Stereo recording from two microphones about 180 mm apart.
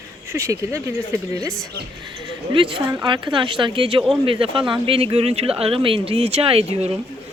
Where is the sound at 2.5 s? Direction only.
30° right (ahead or behind).